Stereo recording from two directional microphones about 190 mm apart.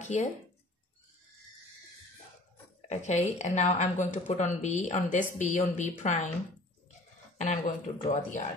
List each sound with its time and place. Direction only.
0.0 s speech: 40° left (ahead or behind)
2.9 s a woman's voice: 35° left (ahead or behind)
7.3 s a woman's voice: 40° left (ahead or behind)